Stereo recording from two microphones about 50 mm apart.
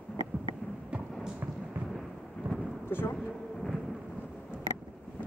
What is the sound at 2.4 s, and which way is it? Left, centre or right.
Thunder, right.